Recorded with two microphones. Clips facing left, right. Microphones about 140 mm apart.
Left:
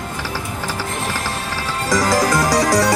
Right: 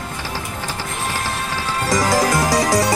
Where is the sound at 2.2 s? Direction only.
25° right (ahead or behind).